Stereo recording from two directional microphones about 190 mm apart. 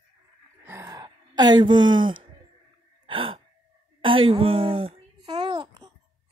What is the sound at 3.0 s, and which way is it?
Sigh, 30° right (ahead or behind).